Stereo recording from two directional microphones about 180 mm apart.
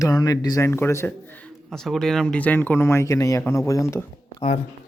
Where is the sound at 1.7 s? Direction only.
Centre (ahead or behind); by 4.1 s 15° left (ahead or behind).